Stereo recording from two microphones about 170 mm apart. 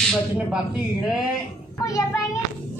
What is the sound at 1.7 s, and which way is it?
Speech, 20° left (ahead or behind).